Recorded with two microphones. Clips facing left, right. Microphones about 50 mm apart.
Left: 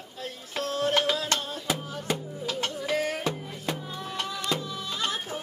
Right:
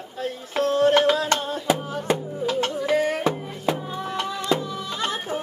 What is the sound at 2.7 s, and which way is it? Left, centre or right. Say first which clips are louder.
Music: right 6 dB; centre.